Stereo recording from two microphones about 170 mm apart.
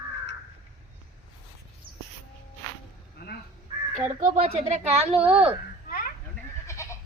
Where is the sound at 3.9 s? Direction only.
45° right (ahead or behind).